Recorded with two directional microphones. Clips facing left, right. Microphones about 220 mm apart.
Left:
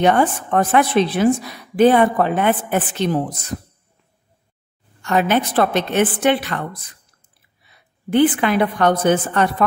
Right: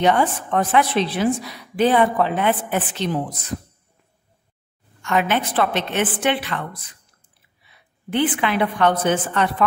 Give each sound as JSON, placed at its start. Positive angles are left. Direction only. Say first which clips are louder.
{"t": 0.0, "sound": "a woman's voice", "louder": "left 3 dB", "side_deg": 50}
{"t": 5.0, "sound": "a woman's voice", "louder": "left 3 dB", "side_deg": 40}
{"t": 7.6, "sound": "a woman's voice", "louder": "left 4 dB", "side_deg": 40}